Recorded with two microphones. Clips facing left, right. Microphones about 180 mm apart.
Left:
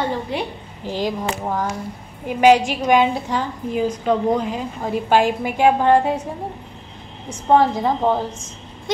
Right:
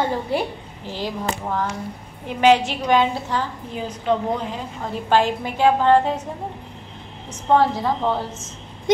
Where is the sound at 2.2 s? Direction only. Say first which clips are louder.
Left 2 dB; 10° left (ahead or behind).